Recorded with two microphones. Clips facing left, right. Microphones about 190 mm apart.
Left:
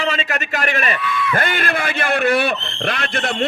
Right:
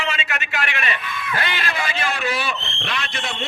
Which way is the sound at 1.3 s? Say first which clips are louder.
Left 3 dB; 50° left (ahead or behind).